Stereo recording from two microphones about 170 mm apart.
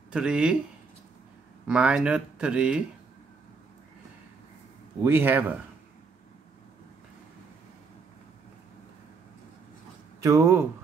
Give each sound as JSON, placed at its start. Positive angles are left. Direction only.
{"t": 0.1, "sound": "speech", "side_deg": -5}
{"t": 1.7, "sound": "speech", "side_deg": -5}
{"t": 5.0, "sound": "speech", "side_deg": -10}
{"t": 10.2, "sound": "speech", "side_deg": -15}